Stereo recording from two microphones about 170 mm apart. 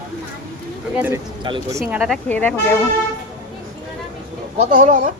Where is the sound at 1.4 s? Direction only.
30° right (ahead or behind).